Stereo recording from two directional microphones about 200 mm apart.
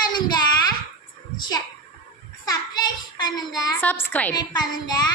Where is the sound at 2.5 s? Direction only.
20° left (ahead or behind).